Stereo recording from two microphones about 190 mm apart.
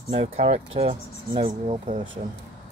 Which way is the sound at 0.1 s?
30° right (ahead or behind).